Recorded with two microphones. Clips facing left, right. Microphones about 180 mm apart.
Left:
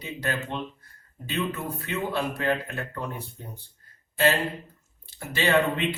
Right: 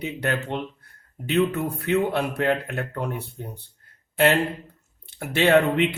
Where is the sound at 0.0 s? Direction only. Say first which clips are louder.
Right 4 dB; 65° right (ahead or behind).